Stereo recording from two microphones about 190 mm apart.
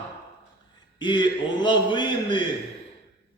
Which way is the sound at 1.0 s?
25° left (ahead or behind).